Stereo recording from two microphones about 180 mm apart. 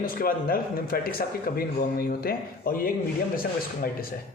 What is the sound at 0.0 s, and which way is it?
A man's voice, 55° left (ahead or behind).